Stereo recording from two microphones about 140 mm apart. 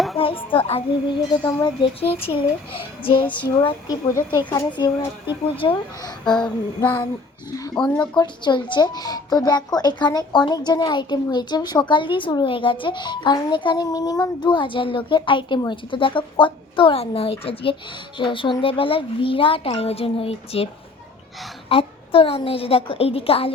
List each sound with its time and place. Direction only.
0.2 s speech: 40° left (ahead or behind)
7.8 s speech: 10° left (ahead or behind)
8.1 s speech: 30° left (ahead or behind)
21.7 s a woman's voice: 40° left (ahead or behind)